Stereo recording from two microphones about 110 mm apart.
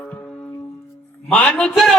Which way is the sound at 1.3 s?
10° left (ahead or behind).